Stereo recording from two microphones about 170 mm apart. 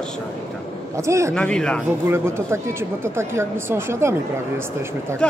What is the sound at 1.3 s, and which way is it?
Speech, 5° left (ahead or behind).